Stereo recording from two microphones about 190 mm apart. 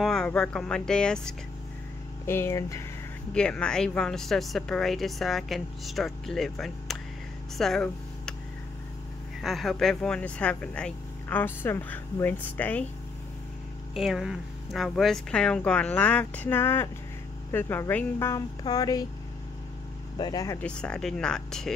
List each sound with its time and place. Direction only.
0.0 s a woman's voice: 5° left (ahead or behind)
7.5 s a sound: centre (ahead or behind)
9.4 s speech: centre (ahead or behind)
13.9 s a woman's voice: centre (ahead or behind); by 19.0 s 20° left (ahead or behind)
20.2 s speech: 20° left (ahead or behind)
20.6 s a woman's voice: 5° left (ahead or behind)